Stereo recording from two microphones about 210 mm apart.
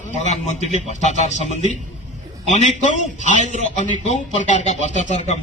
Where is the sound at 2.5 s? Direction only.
35° left (ahead or behind).